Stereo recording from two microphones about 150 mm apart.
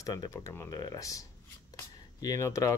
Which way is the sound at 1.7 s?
20° left (ahead or behind).